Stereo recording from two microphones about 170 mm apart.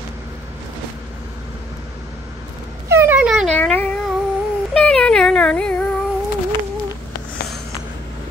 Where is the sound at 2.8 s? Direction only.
15° right (ahead or behind).